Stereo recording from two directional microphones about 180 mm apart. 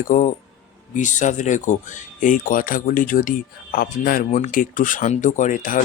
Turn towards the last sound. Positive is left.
turn(degrees=45)  # may be behind; listen again after turning